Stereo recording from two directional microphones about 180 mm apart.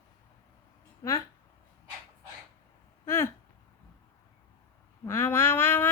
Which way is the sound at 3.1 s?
15° left (ahead or behind).